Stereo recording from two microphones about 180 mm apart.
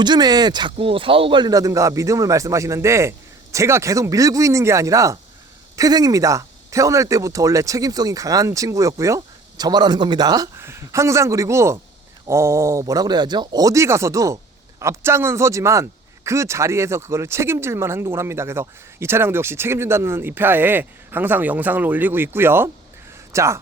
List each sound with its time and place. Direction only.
0.0 s speech: 25° right (ahead or behind)